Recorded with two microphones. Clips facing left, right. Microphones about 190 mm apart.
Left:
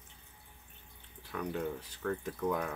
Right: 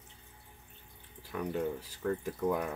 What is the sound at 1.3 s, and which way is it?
Speech, 10° right (ahead or behind).